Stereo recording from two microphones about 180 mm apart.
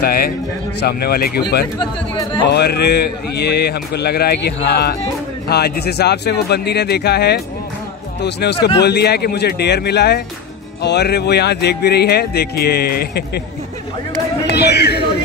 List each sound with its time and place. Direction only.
0.0 s speech: 55° left (ahead or behind)
1.8 s speech: 25° left (ahead or behind)
2.5 s speech: 65° left (ahead or behind)
14.5 s speech: 65° left (ahead or behind)